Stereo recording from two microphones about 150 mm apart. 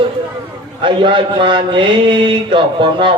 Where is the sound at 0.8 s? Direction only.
35° right (ahead or behind).